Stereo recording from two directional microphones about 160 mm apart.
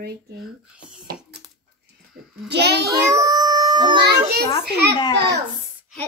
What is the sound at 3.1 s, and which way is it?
Cat, 20° right (ahead or behind).